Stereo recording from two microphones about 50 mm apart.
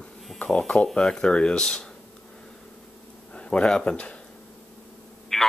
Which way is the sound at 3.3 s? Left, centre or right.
Left.